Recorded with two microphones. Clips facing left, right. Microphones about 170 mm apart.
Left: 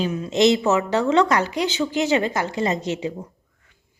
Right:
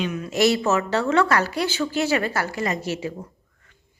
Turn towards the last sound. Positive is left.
turn(degrees=20)  # may be behind; listen again after turning